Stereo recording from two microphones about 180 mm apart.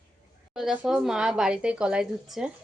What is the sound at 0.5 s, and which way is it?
A woman's voice, 5° right (ahead or behind).